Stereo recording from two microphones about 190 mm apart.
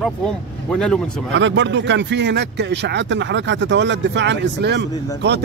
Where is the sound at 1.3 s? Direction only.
70° right (ahead or behind).